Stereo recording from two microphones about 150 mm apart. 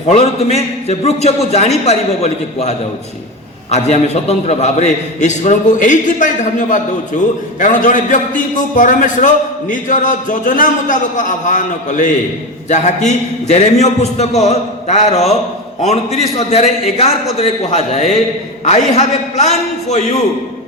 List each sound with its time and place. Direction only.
0.1 s a man's voice: 45° left (ahead or behind)